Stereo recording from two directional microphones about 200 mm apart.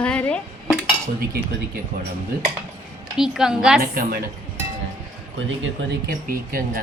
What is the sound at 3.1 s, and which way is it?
Speech, centre (ahead or behind).